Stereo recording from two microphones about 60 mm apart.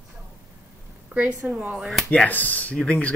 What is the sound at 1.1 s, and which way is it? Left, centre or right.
Speech, right.